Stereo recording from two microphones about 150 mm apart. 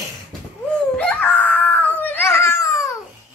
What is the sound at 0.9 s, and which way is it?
Baby cry, 5° left (ahead or behind).